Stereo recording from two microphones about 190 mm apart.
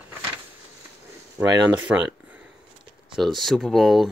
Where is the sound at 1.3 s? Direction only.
20° right (ahead or behind).